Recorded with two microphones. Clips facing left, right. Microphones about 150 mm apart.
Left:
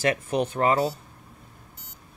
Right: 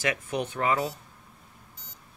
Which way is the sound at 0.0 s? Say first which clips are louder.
Left 5 dB; 35° left (ahead or behind).